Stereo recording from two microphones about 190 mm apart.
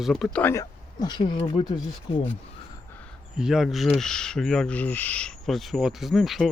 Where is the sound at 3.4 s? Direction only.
Centre (ahead or behind).